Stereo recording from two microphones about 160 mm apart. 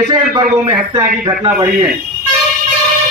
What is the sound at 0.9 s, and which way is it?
Speech, 25° right (ahead or behind).